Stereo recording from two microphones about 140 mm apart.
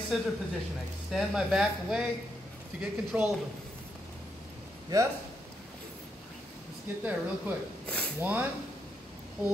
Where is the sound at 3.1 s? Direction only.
10° right (ahead or behind).